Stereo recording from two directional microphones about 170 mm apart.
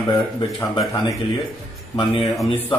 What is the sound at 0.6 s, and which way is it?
Speech, 25° left (ahead or behind).